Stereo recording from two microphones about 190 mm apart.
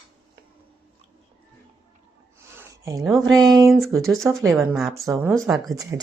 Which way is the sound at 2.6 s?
15° right (ahead or behind).